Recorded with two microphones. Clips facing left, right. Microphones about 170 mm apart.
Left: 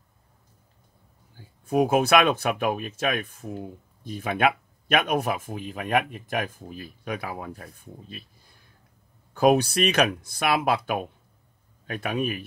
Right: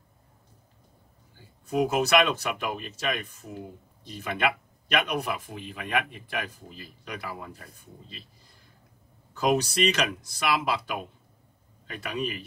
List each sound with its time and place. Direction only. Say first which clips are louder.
1.7 s speech: left 3 dB; 50° left (ahead or behind)